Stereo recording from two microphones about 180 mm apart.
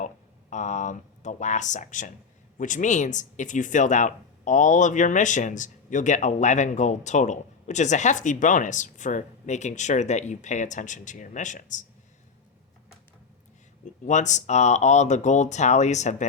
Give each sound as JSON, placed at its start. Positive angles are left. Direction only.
{"t": 0.5, "sound": "speech", "side_deg": 40}
{"t": 14.1, "sound": "speech", "side_deg": 40}